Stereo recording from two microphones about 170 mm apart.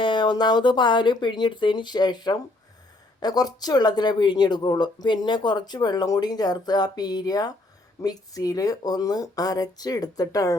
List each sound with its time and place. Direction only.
0.0 s speech: 30° left (ahead or behind)